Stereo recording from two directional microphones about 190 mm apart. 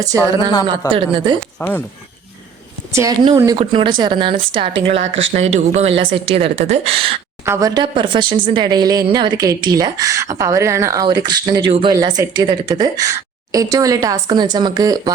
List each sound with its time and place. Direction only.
0.0 s a woman's voice: 15° right (ahead or behind)
1.5 s speech: 10° left (ahead or behind)
2.9 s a woman's voice: 15° right (ahead or behind)
4.7 s speech: 75° right (ahead or behind)
5.3 s speech: 35° right (ahead or behind)
7.4 s a woman's voice: 15° right (ahead or behind)